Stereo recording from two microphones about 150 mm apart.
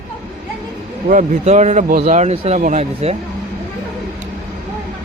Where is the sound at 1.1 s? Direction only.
55° right (ahead or behind).